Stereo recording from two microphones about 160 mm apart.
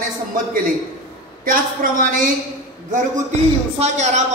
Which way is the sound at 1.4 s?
60° right (ahead or behind).